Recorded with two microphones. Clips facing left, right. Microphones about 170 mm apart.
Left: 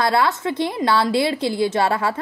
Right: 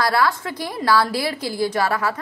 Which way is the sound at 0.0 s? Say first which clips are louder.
Left 1 dB; 25° left (ahead or behind).